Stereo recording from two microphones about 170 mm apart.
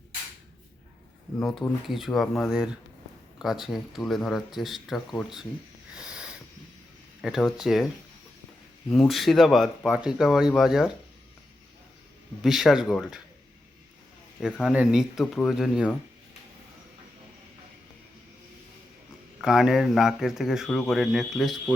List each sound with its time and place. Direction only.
1.4 s speech: centre (ahead or behind)
5.9 s a sound: 5° right (ahead or behind)
7.2 s speech: centre (ahead or behind)
8.9 s speech: centre (ahead or behind)
12.4 s speech: centre (ahead or behind)
14.4 s speech: 5° right (ahead or behind)
19.4 s speech: 5° right (ahead or behind)